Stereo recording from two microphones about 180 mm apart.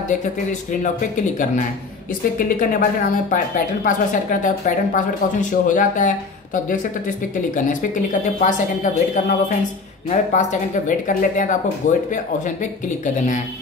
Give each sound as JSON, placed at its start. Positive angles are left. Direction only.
{"t": 0.2, "sound": "speech", "side_deg": 45}
{"t": 2.3, "sound": "speech", "side_deg": 55}